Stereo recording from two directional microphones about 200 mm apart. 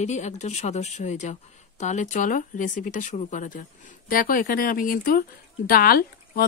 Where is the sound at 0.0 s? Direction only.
35° left (ahead or behind).